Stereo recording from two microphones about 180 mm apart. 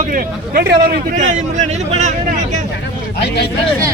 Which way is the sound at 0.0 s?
50° right (ahead or behind).